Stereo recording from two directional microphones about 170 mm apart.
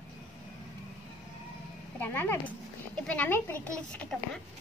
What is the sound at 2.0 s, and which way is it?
A woman's voice, 10° left (ahead or behind).